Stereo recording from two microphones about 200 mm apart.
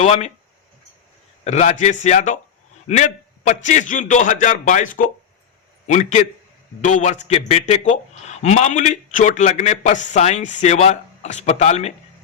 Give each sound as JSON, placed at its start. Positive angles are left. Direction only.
{"t": 0.0, "sound": "speech", "side_deg": 35}
{"t": 1.5, "sound": "speech", "side_deg": 35}